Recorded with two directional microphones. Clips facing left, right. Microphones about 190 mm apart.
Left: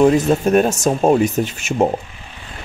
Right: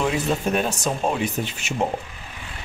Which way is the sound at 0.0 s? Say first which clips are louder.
Left 9 dB; 45° left (ahead or behind).